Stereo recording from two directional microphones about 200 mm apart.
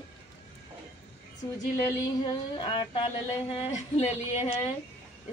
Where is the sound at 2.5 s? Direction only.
25° left (ahead or behind).